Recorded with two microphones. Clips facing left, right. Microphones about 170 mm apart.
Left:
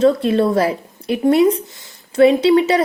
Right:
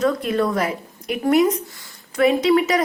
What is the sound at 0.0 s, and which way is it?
A woman's voice, 30° left (ahead or behind).